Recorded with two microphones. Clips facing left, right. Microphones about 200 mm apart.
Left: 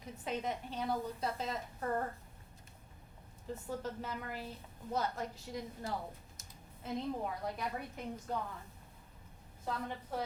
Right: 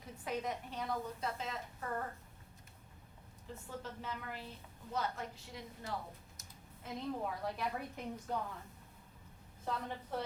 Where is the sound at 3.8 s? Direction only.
40° left (ahead or behind).